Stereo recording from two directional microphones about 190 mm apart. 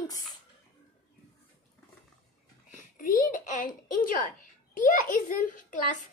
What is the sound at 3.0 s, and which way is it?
A child's voice, 45° left (ahead or behind).